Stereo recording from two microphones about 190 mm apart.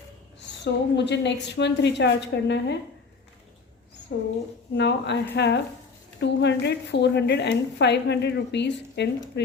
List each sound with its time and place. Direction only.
0.6 s a woman's voice: 65° left (ahead or behind)
4.1 s a woman's voice: 55° left (ahead or behind)